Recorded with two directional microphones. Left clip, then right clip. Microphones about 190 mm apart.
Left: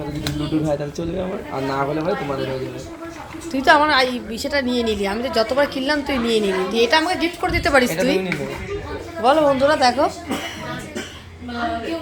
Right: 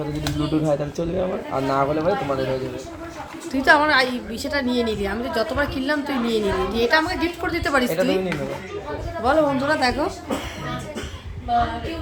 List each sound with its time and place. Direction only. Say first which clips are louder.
0.3 s speech: even; 35° right (ahead or behind)
3.5 s a woman's voice: left 2 dB; 5° left (ahead or behind)
9.2 s a woman's voice: left 4 dB; 5° left (ahead or behind)